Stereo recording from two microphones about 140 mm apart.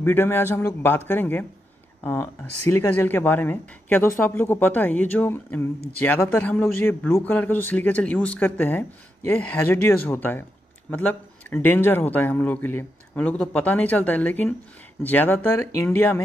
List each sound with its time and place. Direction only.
0.0 s speech: 15° left (ahead or behind)
2.7 s speech: 15° left (ahead or behind)